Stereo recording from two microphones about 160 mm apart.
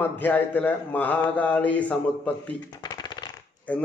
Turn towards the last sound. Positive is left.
turn(degrees=10)  # may be behind; listen again after turning